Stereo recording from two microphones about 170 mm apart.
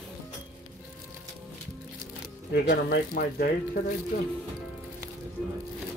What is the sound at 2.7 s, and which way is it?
Speech, 60° left (ahead or behind).